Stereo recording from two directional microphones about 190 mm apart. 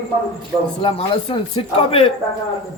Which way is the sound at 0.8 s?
30° left (ahead or behind).